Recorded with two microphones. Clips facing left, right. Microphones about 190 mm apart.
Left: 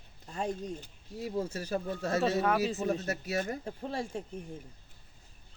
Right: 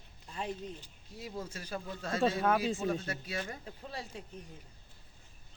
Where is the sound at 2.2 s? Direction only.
5° left (ahead or behind).